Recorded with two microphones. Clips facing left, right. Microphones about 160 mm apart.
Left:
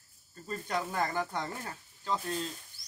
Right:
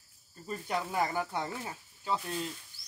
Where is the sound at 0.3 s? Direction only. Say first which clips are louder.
Even; 10° right (ahead or behind).